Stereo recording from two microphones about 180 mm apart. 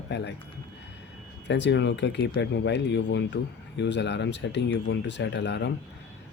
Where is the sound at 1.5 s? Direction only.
80° left.